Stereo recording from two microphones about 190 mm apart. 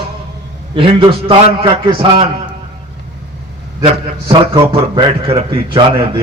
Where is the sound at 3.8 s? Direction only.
30° right (ahead or behind).